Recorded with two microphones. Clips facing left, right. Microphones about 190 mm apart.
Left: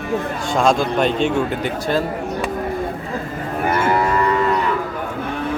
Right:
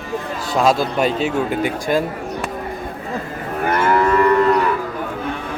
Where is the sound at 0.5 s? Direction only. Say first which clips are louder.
Even; 5° right (ahead or behind).